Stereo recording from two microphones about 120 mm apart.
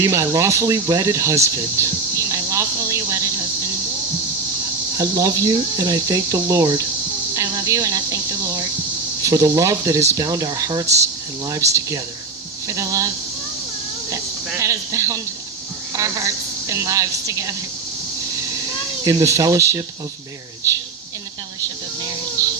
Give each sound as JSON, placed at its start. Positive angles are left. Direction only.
{"t": 0.0, "sound": "speech", "side_deg": -25}
{"t": 4.9, "sound": "speech", "side_deg": -30}
{"t": 7.3, "sound": "insect", "side_deg": -25}
{"t": 9.2, "sound": "speech", "side_deg": -30}
{"t": 14.5, "sound": "a woman's voice", "side_deg": -25}
{"t": 19.0, "sound": "speech", "side_deg": -25}